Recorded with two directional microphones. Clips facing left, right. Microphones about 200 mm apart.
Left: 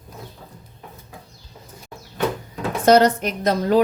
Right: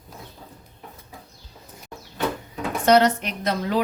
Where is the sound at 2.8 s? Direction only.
40° left (ahead or behind).